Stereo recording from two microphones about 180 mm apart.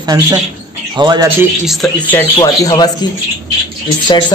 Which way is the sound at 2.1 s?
20° left (ahead or behind).